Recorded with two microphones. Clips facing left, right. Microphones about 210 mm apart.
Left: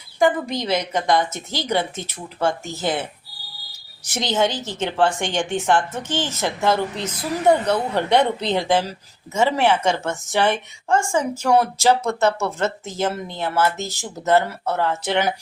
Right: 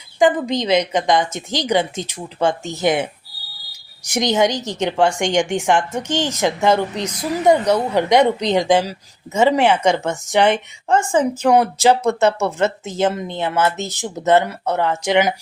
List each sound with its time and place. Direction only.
0.2 s speech: 15° right (ahead or behind)
4.1 s speech: 15° right (ahead or behind)